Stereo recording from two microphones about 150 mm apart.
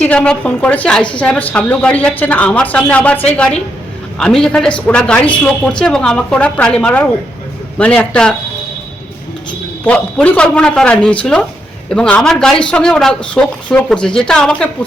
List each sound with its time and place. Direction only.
0.0 s a man's voice: 10° left (ahead or behind)
9.8 s a man's voice: 10° left (ahead or behind)